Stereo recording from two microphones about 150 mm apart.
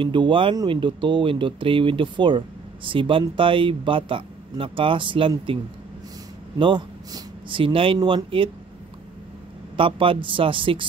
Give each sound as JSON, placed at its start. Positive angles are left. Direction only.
{"t": 0.0, "sound": "speech", "side_deg": -35}
{"t": 6.6, "sound": "speech", "side_deg": -30}
{"t": 9.8, "sound": "speech", "side_deg": -35}